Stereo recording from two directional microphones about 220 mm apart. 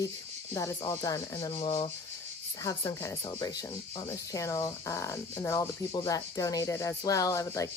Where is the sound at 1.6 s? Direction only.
25° left (ahead or behind).